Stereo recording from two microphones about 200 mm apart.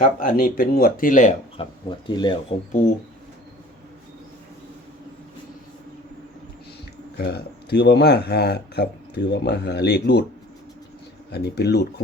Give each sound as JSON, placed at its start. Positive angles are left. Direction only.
{"t": 0.0, "sound": "speech", "side_deg": 45}
{"t": 1.6, "sound": "speech", "side_deg": 30}
{"t": 7.2, "sound": "speech", "side_deg": 55}
{"t": 11.3, "sound": "speech", "side_deg": 55}